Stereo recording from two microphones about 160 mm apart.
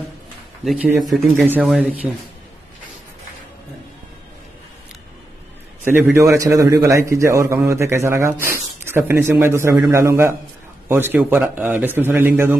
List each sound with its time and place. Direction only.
0.7 s speech: 5° right (ahead or behind)
5.9 s a man's voice: 15° right (ahead or behind)